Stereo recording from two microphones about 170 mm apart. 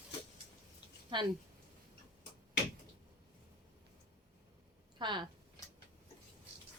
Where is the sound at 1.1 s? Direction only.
30° right (ahead or behind).